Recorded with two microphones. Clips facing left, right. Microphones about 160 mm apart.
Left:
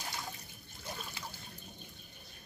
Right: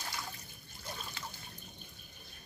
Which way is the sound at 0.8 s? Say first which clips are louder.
Left 1 dB; 5° left (ahead or behind).